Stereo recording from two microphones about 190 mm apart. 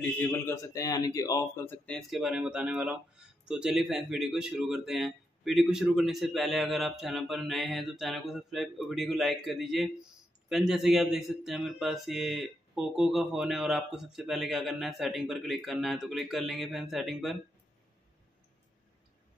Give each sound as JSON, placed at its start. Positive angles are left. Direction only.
{"t": 0.2, "sound": "a man's voice", "side_deg": 15}